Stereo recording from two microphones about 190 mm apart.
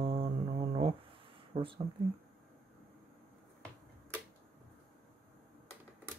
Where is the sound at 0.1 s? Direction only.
30° right (ahead or behind).